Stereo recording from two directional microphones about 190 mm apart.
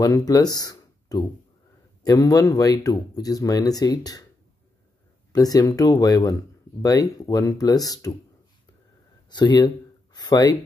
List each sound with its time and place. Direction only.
0.0 s speech: 20° left (ahead or behind)
5.3 s speech: 20° left (ahead or behind)
9.3 s speech: 20° left (ahead or behind)
10.1 s a sound: 20° left (ahead or behind)